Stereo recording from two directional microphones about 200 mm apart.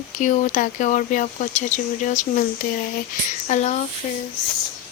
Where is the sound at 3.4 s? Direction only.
35° left (ahead or behind).